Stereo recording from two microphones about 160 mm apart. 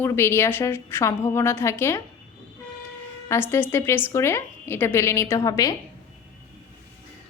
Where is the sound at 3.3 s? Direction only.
15° left (ahead or behind).